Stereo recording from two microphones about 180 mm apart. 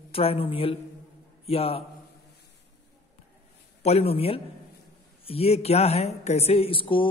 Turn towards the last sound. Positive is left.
turn(degrees=30)  # may be behind; listen again after turning